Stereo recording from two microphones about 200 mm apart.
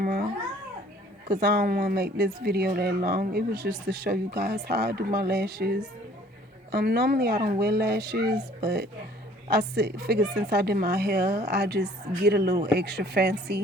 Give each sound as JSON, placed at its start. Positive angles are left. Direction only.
{"t": 0.0, "sound": "babbling", "side_deg": -50}
{"t": 1.3, "sound": "speech", "side_deg": -50}